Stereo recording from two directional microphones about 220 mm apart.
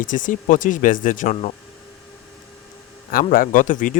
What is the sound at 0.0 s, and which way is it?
Speech, 35° left (ahead or behind).